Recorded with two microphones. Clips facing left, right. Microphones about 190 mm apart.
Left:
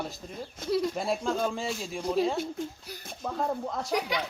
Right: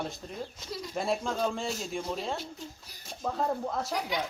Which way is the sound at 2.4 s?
55° left (ahead or behind).